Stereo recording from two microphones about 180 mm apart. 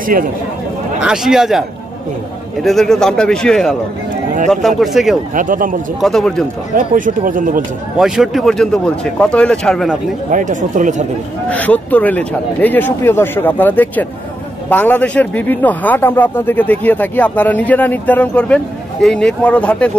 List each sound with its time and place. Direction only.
0.0 s speech: 50° right (ahead or behind)
1.0 s a man's voice: 5° right (ahead or behind)
2.6 s a man's voice: centre (ahead or behind)
5.3 s speech: 50° right (ahead or behind)
5.9 s a man's voice: centre (ahead or behind)
6.7 s speech: 50° right (ahead or behind)
8.0 s a man's voice: centre (ahead or behind)
10.3 s speech: 45° right (ahead or behind)
11.4 s speech: 10° left (ahead or behind)